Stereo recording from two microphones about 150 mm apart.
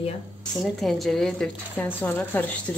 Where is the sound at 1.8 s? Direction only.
10° left (ahead or behind).